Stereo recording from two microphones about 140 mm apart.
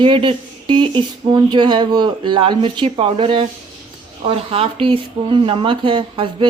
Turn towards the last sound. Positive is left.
turn(degrees=-35)  # may be behind; listen again after turning